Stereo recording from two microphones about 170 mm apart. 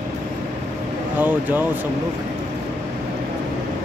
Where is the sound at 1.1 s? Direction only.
10° right (ahead or behind).